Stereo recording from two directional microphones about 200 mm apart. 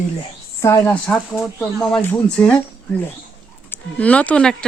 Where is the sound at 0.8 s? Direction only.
5° left (ahead or behind).